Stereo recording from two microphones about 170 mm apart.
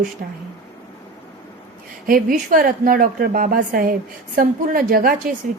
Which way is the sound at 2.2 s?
55° right (ahead or behind).